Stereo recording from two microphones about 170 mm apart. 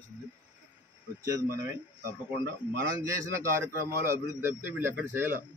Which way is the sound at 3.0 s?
15° right (ahead or behind).